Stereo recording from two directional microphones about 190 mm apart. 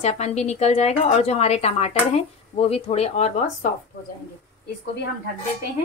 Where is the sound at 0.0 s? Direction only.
35° left (ahead or behind).